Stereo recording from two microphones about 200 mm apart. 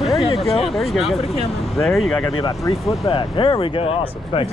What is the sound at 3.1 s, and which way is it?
Speech, 25° left (ahead or behind).